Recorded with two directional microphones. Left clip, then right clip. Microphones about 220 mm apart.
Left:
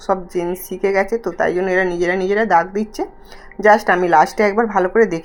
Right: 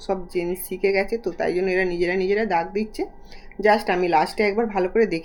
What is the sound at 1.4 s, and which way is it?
Speech, 5° left (ahead or behind).